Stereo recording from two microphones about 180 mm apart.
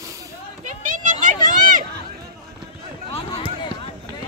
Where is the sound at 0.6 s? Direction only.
45° right (ahead or behind).